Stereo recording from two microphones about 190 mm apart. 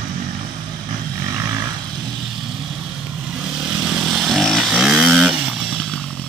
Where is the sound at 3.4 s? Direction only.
5° right (ahead or behind).